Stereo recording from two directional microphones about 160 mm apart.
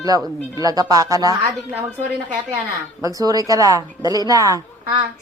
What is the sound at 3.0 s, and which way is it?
A woman's voice, 25° right (ahead or behind).